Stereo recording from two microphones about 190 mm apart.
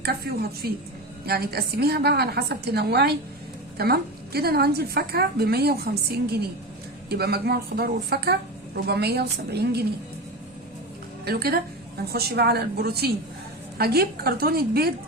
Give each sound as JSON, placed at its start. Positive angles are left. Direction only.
{"t": 0.0, "sound": "a woman's voice", "side_deg": -55}
{"t": 11.3, "sound": "a woman's voice", "side_deg": -55}